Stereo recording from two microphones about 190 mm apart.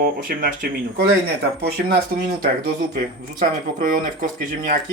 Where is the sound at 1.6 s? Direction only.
60° right (ahead or behind).